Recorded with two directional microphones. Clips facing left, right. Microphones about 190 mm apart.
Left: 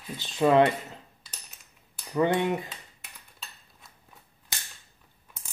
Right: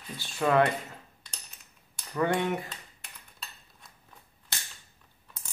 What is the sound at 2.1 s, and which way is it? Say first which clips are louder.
Speech: left 3 dB; 20° left (ahead or behind).